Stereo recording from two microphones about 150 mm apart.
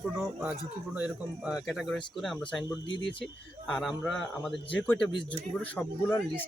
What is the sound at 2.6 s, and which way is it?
Speech, 30° left (ahead or behind).